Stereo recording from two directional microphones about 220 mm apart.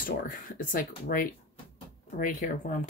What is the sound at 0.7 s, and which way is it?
Speech, 40° left (ahead or behind).